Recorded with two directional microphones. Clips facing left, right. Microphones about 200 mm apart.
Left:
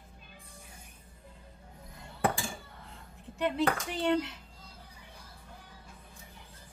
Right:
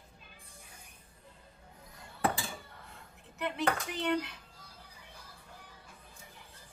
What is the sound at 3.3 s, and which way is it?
Speech, 30° left (ahead or behind).